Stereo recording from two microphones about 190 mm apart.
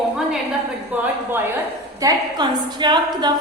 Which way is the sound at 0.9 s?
10° right (ahead or behind).